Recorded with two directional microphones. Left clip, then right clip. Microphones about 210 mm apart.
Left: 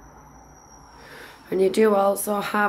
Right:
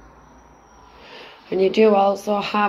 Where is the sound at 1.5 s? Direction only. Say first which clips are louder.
Right 3 dB; 15° left (ahead or behind).